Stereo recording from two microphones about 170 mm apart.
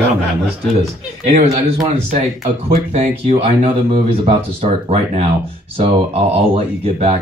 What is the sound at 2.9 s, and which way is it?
Speech, 35° right (ahead or behind).